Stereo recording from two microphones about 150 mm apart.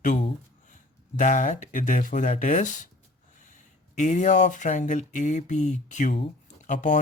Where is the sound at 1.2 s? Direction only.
55° left (ahead or behind).